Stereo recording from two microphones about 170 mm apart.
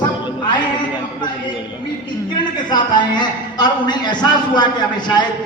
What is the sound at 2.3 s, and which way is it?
A man's voice, 25° left (ahead or behind).